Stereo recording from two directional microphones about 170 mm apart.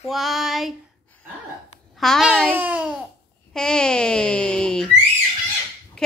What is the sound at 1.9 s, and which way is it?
Speech, centre (ahead or behind).